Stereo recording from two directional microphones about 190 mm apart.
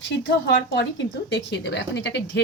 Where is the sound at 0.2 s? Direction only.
70° left (ahead or behind).